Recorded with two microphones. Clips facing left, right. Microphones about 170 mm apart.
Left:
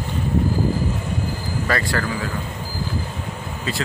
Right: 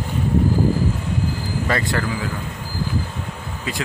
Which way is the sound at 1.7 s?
20° right (ahead or behind).